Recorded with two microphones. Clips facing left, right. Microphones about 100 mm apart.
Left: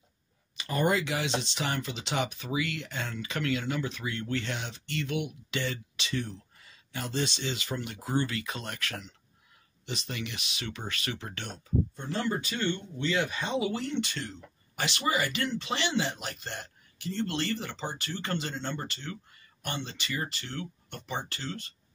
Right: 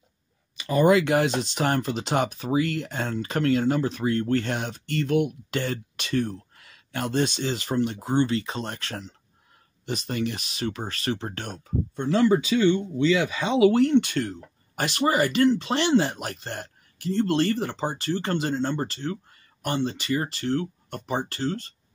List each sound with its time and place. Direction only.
1.0 s speech: 50° right (ahead or behind)
11.4 s speech: 55° right (ahead or behind)